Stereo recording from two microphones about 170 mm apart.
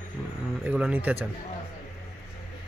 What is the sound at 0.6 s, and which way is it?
Speech, 10° right (ahead or behind).